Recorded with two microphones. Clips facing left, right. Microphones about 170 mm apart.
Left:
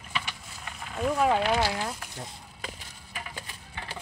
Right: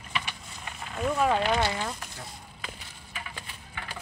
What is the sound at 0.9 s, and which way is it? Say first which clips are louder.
Speech: left 1 dB; 5° left (ahead or behind).